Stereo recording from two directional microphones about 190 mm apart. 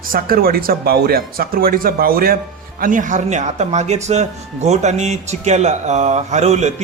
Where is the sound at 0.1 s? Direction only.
50° right (ahead or behind).